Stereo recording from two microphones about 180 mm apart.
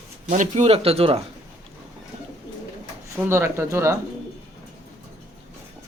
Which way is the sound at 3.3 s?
15° right (ahead or behind).